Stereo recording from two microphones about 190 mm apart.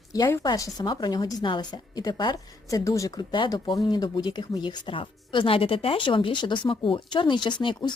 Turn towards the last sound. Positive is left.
turn(degrees=25)  # may be behind; listen again after turning